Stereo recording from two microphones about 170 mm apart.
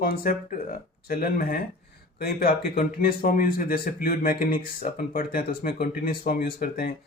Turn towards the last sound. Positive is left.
turn(degrees=60)  # may be behind; listen again after turning